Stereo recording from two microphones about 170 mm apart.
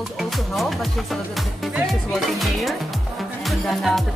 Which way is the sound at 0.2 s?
Centre (ahead or behind).